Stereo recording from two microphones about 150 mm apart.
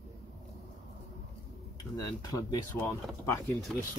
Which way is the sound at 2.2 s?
25° left (ahead or behind).